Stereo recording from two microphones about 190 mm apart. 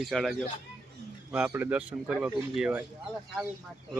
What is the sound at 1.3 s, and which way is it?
Speech, 10° right (ahead or behind).